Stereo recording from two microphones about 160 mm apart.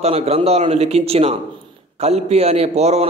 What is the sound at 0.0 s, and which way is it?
A man's voice, 40° right (ahead or behind).